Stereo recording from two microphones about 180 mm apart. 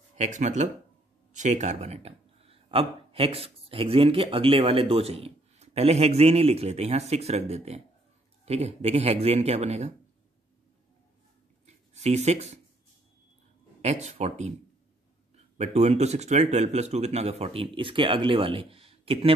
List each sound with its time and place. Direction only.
0.2 s speech: 40° right (ahead or behind)
11.6 s a sound: 40° right (ahead or behind)
13.7 s speech: 40° right (ahead or behind)